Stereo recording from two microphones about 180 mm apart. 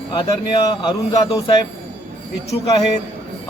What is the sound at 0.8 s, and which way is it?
Speech, 25° left (ahead or behind).